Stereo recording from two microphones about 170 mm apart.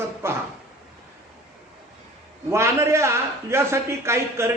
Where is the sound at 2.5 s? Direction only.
15° right (ahead or behind).